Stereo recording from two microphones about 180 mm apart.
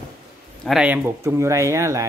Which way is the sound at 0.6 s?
5° right (ahead or behind).